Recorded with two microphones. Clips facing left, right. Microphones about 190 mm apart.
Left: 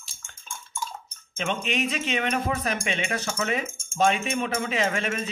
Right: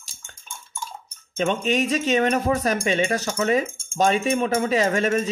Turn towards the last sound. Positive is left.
turn(degrees=-40)  # may be behind; listen again after turning